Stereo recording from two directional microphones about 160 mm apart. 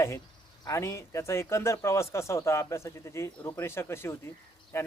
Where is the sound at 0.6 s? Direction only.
20° left (ahead or behind).